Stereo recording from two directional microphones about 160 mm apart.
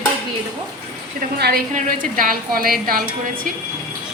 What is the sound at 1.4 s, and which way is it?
Speech, 85° right.